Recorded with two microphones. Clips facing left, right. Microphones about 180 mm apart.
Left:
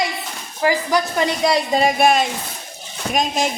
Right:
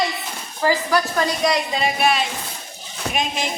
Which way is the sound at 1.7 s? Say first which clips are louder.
Left 5 dB; 45° left (ahead or behind).